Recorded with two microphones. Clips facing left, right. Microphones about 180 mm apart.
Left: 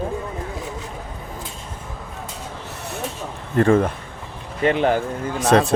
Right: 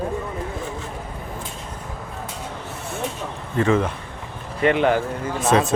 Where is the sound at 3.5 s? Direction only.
50° left (ahead or behind).